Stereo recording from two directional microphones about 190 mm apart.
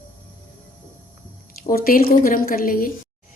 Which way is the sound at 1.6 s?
50° left (ahead or behind).